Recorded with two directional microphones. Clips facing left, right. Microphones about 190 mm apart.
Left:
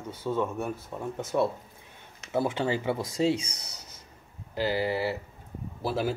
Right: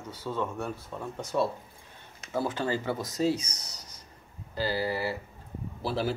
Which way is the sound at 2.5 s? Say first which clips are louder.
Left 2 dB; 20° left (ahead or behind).